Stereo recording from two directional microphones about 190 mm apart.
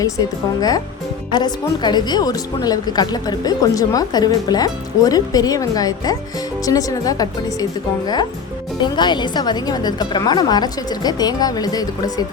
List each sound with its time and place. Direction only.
0.0 s speech: 20° left (ahead or behind)